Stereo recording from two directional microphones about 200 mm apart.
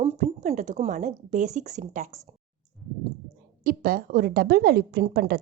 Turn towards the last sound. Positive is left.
turn(degrees=-45)  # may be behind; listen again after turning